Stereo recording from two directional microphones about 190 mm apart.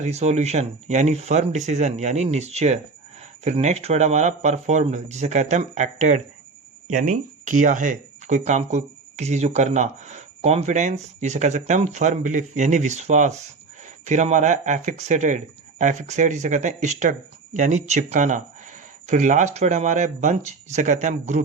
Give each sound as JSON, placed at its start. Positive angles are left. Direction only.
{"t": 0.0, "sound": "speech", "side_deg": -35}